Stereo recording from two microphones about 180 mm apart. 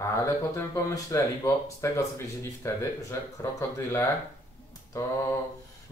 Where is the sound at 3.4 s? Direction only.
15° left (ahead or behind).